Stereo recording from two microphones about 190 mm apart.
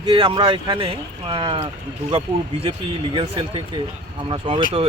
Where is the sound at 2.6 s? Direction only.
25° right (ahead or behind).